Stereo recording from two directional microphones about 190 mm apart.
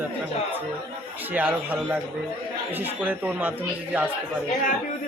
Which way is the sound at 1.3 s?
10° right (ahead or behind).